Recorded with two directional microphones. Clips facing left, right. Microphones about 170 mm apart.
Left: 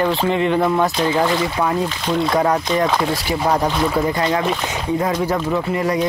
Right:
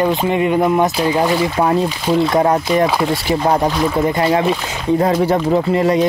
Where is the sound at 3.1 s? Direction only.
25° right (ahead or behind).